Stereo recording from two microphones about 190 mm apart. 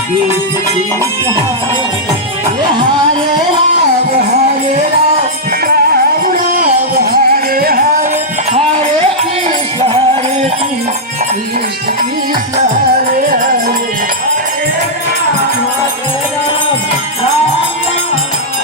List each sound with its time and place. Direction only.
6.9 s music: 50° right (ahead or behind)